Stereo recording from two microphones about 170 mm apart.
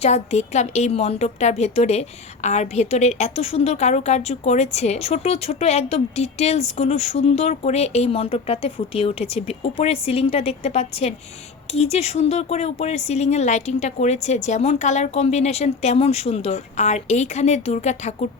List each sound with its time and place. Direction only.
0.0 s a woman's voice: 40° left (ahead or behind)